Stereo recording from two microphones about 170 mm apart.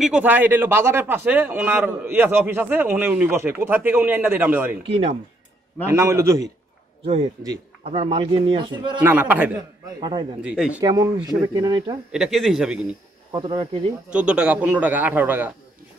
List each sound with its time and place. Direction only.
0.0 s a man's voice: 5° right (ahead or behind)
5.9 s a man's voice: 15° right (ahead or behind)
7.9 s a man's voice: 35° right (ahead or behind)
9.0 s a man's voice: 10° right (ahead or behind)
9.9 s a man's voice: 25° right (ahead or behind)
10.4 s a man's voice: 5° right (ahead or behind)
10.8 s a man's voice: 20° right (ahead or behind)
12.1 s speech: centre (ahead or behind)
13.3 s a man's voice: 30° right (ahead or behind)
14.1 s a man's voice: 5° right (ahead or behind)